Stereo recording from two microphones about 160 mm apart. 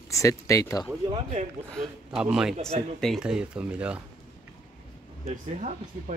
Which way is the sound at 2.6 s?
40° right (ahead or behind).